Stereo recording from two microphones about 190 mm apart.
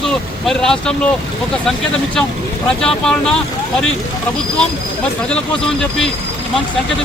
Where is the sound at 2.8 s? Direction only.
5° left (ahead or behind).